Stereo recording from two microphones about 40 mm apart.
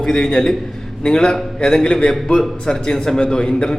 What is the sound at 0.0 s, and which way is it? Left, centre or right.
A man's voice, centre.